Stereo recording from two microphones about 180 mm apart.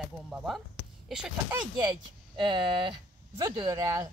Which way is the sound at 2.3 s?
25° right (ahead or behind).